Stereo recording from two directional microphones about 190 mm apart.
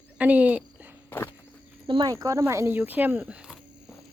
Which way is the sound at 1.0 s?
10° left (ahead or behind).